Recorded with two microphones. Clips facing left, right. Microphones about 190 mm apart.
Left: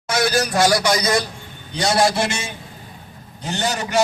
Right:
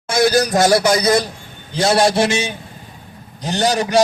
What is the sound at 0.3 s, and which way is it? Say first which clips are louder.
Speech: right 4 dB; 40° right (ahead or behind).